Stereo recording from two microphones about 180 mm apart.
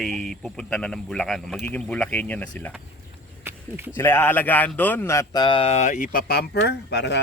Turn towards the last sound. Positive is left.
turn(degrees=70)  # may be behind; listen again after turning